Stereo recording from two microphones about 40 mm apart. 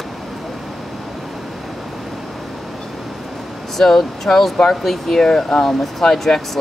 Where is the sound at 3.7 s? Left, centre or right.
Centre.